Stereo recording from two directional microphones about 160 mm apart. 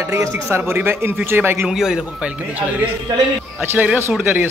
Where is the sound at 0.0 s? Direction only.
15° right (ahead or behind).